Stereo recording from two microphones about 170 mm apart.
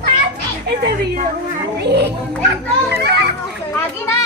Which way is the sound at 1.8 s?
80° right.